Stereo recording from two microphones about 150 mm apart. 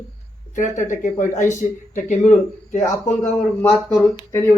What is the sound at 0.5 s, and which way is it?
Speech, 55° left (ahead or behind).